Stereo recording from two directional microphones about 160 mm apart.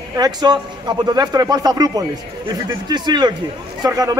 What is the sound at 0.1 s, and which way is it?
A man's voice, 25° right (ahead or behind).